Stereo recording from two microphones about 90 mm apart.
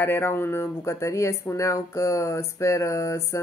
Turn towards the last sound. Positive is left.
turn(degrees=35)  # may be behind; listen again after turning